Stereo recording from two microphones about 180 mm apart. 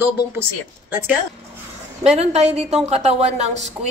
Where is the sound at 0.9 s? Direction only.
10° right (ahead or behind).